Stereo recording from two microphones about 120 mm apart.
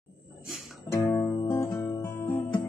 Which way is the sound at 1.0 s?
20° left (ahead or behind).